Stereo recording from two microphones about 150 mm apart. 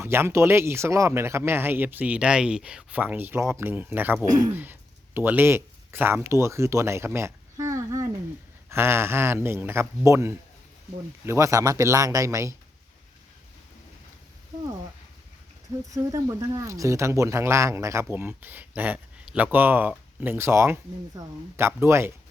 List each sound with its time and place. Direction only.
0.0 s a man's voice: 15° right (ahead or behind)
15.9 s a man's voice: 20° right (ahead or behind)